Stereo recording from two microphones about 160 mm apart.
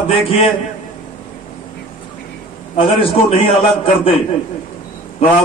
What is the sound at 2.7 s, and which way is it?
A man's voice, 35° left (ahead or behind).